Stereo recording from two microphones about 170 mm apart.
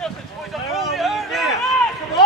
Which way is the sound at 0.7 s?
Centre (ahead or behind).